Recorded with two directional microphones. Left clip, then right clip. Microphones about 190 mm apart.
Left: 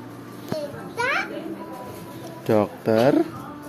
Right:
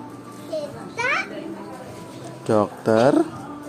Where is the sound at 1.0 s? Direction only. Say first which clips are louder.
Right 1 dB; 10° left (ahead or behind).